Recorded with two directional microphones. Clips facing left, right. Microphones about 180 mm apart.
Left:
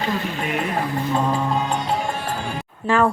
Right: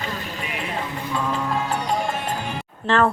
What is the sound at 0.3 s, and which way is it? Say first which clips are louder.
Speech: left 5 dB; 50° left (ahead or behind).